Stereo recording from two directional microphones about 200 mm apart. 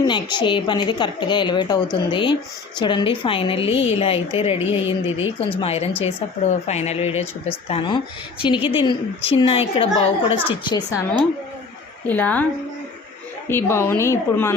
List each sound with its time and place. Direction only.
0.0 s a woman's voice: 20° left (ahead or behind)
12.0 s a woman's voice: 10° left (ahead or behind)
13.5 s a woman's voice: 10° left (ahead or behind)